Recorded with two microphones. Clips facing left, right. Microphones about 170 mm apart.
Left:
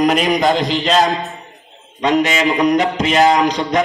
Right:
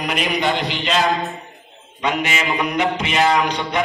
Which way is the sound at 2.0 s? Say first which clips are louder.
Left 7 dB; 40° left (ahead or behind).